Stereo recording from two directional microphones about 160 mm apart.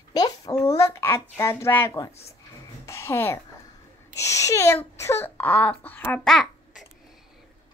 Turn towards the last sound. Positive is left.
turn(degrees=0)  # may be behind; listen again after turning